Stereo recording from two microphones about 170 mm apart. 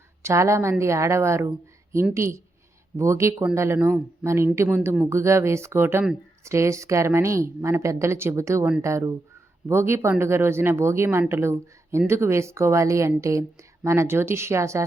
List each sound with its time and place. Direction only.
0.2 s a woman's voice: 15° right (ahead or behind)